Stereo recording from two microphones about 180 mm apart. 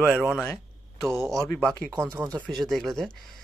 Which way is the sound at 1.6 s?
5° left (ahead or behind).